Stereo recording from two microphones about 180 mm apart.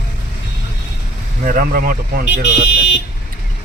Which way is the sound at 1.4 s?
55° right (ahead or behind).